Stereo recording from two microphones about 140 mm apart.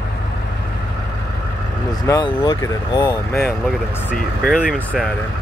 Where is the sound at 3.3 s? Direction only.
15° left (ahead or behind).